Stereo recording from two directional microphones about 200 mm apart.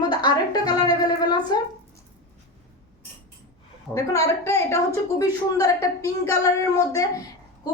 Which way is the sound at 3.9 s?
15° left (ahead or behind).